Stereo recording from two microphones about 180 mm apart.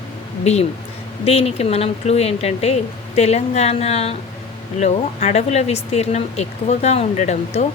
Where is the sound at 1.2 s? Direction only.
35° left (ahead or behind).